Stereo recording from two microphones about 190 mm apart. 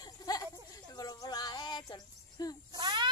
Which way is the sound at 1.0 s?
20° left (ahead or behind).